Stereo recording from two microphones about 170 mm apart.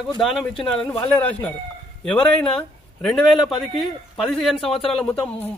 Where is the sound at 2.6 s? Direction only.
5° left (ahead or behind).